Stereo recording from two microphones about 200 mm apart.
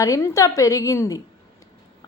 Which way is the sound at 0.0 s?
15° left (ahead or behind).